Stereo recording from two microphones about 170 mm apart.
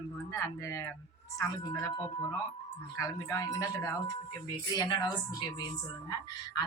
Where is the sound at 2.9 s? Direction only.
15° left (ahead or behind).